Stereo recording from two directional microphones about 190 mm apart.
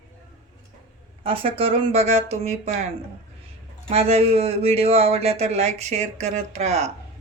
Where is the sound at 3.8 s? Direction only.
30° right (ahead or behind).